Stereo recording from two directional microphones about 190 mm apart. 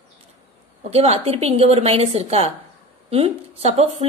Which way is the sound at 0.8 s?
30° right (ahead or behind).